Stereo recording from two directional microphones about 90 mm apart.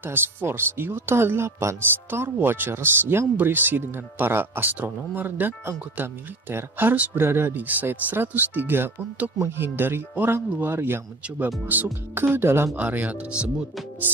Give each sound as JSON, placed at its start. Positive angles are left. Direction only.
{"t": 0.0, "sound": "speech", "side_deg": -25}